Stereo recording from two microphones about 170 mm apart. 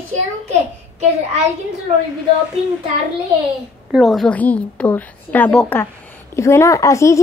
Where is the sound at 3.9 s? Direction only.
Centre (ahead or behind); by 7.2 s 15° left (ahead or behind).